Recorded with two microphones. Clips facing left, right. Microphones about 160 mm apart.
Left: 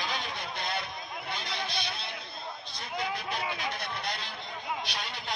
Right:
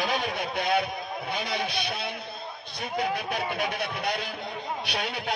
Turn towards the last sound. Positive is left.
turn(degrees=-65)  # may be behind; listen again after turning